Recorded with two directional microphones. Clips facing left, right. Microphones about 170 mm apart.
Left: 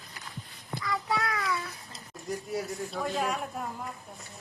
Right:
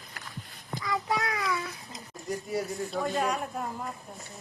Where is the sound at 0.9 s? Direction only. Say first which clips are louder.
Right 1 dB; 20° right (ahead or behind).